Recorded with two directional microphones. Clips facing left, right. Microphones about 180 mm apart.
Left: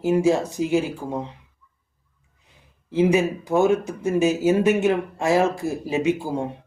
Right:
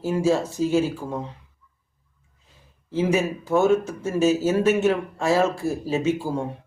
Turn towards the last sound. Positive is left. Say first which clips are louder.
# left 1 dB
turn(degrees=15)  # may be behind; listen again after turning